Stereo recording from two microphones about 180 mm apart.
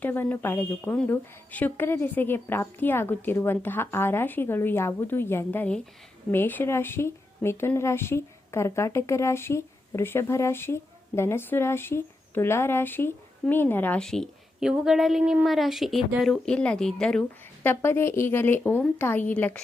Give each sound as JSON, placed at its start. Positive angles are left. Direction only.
{"t": 0.0, "sound": "speech", "side_deg": 10}